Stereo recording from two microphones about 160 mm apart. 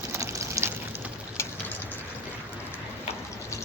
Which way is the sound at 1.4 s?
15° left (ahead or behind).